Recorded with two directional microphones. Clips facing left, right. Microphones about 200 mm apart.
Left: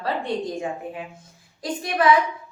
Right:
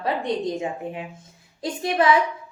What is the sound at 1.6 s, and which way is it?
Speech, 25° right (ahead or behind).